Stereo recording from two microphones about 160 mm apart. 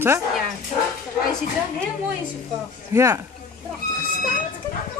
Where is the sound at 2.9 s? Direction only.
20° right (ahead or behind).